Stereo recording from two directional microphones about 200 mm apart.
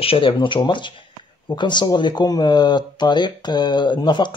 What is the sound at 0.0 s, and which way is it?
Speech, 25° left (ahead or behind).